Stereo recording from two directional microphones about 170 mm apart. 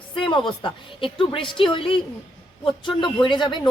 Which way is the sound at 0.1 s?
30° left (ahead or behind).